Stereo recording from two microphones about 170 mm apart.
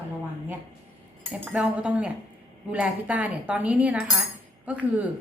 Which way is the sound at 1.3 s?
5° right (ahead or behind).